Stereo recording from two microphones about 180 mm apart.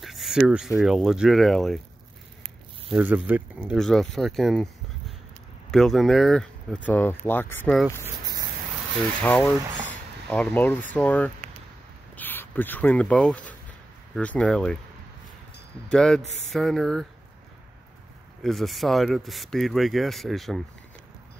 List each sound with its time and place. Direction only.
0.0 s speech: centre (ahead or behind)
2.4 s speech: 10° right (ahead or behind); by 7.7 s 10° left (ahead or behind)
8.0 s a sound: 20° right (ahead or behind)
9.2 s speech: 10° left (ahead or behind)
15.9 s speech: 5° left (ahead or behind)
18.4 s speech: centre (ahead or behind)